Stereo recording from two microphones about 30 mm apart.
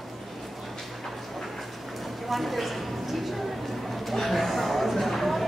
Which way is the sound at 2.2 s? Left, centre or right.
Centre.